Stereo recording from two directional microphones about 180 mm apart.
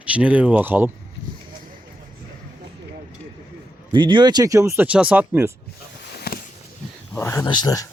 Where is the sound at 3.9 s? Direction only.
25° right (ahead or behind); by 5.5 s 10° right (ahead or behind).